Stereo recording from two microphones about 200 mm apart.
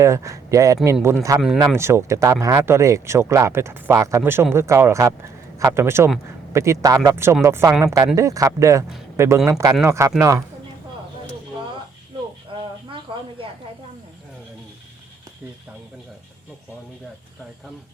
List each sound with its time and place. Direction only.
0.0 s speech: 15° right (ahead or behind)